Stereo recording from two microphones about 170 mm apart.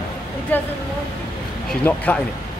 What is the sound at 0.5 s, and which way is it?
Speech, 10° left (ahead or behind).